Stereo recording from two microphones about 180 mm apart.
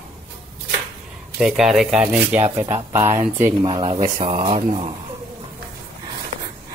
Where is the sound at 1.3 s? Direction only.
5° right (ahead or behind).